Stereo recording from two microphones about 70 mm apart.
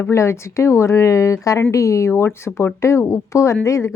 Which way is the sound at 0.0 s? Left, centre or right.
Left.